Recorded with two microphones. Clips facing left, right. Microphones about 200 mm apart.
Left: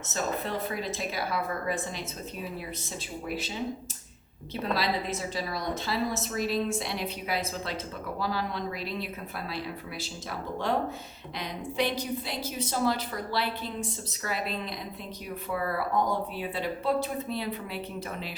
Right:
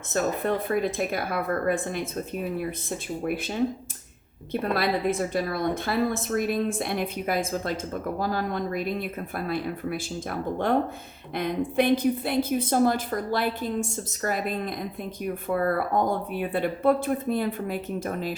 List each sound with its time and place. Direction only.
0.1 s a woman's voice: 55° right (ahead or behind)